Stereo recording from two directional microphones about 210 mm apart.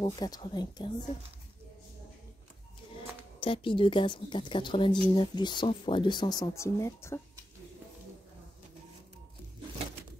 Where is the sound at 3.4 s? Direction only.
25° left (ahead or behind).